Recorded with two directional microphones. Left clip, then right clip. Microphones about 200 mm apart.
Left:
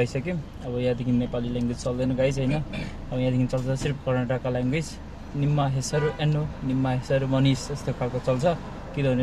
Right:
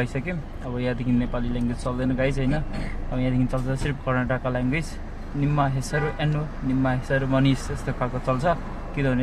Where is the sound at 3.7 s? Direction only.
20° left (ahead or behind).